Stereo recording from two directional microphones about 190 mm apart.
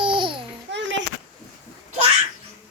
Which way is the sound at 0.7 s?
75° right (ahead or behind).